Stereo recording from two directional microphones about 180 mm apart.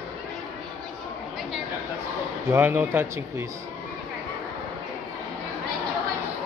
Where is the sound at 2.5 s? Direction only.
10° right (ahead or behind).